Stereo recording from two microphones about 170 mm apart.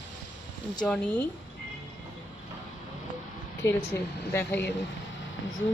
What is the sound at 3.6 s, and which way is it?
Speech, 15° left (ahead or behind).